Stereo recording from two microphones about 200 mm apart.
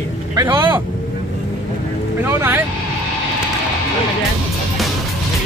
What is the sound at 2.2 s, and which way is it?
Speech, 10° right (ahead or behind).